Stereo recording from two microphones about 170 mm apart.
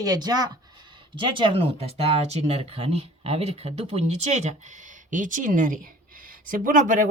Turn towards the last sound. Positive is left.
turn(degrees=-50)  # may be behind; listen again after turning